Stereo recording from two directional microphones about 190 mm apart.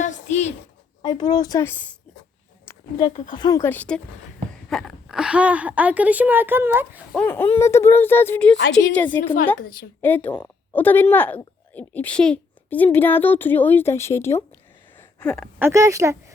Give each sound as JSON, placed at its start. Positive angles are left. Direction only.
{"t": 0.0, "sound": "a sound", "side_deg": 35}
{"t": 1.0, "sound": "a woman's voice", "side_deg": 20}
{"t": 2.7, "sound": "a sound", "side_deg": 15}
{"t": 3.0, "sound": "a woman's voice", "side_deg": 25}
{"t": 3.6, "sound": "a woman's voice", "side_deg": 10}
{"t": 7.2, "sound": "speech", "side_deg": 10}
{"t": 9.6, "sound": "a woman's voice", "side_deg": 50}
{"t": 10.0, "sound": "speech", "side_deg": 10}
{"t": 14.9, "sound": "a sound", "side_deg": 5}
{"t": 15.5, "sound": "a woman's voice", "side_deg": -15}